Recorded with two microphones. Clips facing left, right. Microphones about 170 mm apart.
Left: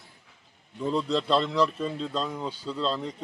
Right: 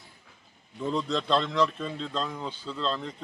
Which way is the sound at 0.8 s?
Centre (ahead or behind).